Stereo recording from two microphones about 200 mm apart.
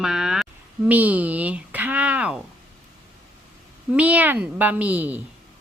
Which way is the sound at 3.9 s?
5° right (ahead or behind).